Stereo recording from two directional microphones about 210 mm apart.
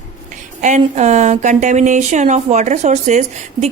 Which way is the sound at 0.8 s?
35° right (ahead or behind).